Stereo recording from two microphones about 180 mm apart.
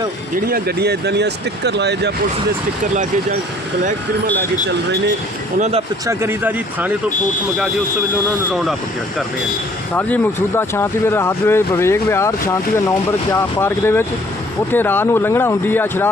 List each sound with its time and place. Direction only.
0.3 s speech: 55° right (ahead or behind)
5.5 s speech: 40° right (ahead or behind)
6.1 s speech: 15° right (ahead or behind)
9.9 s speech: 10° left (ahead or behind)